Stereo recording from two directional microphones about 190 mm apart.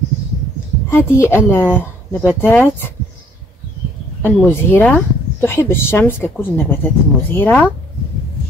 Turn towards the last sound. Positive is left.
turn(degrees=10)  # may be behind; listen again after turning